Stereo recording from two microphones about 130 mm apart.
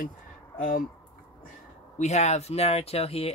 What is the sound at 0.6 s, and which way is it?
Speech, 90° left.